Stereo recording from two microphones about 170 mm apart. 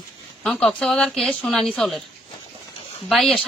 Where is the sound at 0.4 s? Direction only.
5° left (ahead or behind).